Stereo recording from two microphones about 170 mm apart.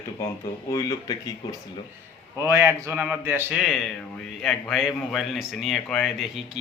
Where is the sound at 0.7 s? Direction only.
20° left (ahead or behind).